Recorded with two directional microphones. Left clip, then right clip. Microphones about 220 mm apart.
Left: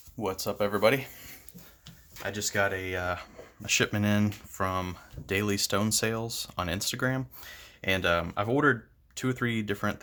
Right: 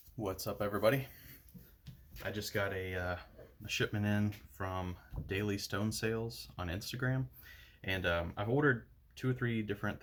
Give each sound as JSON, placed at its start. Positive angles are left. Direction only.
{"t": 0.2, "sound": "speech", "side_deg": 35}
{"t": 2.2, "sound": "speech", "side_deg": 40}